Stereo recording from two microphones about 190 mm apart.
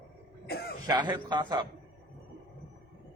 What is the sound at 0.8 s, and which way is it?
Speech, 25° right (ahead or behind).